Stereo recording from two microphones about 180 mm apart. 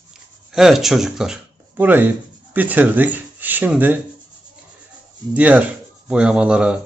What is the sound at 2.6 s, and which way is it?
Speech, 10° right (ahead or behind).